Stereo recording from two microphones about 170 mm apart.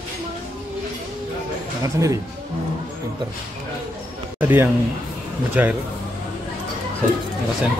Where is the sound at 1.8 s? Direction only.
20° right (ahead or behind).